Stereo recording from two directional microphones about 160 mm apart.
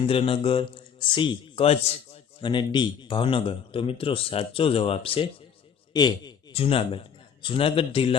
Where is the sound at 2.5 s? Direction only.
30° left (ahead or behind).